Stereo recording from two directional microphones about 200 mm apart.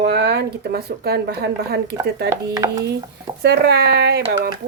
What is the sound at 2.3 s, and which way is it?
Speech, 15° right (ahead or behind).